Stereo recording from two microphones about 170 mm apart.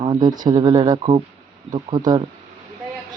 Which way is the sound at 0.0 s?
30° right (ahead or behind).